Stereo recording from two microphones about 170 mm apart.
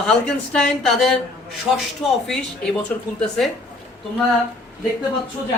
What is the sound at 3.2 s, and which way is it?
Speech, 5° left (ahead or behind).